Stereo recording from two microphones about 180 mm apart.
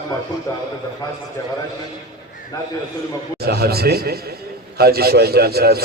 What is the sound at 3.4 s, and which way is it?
A man's voice, 60° right (ahead or behind).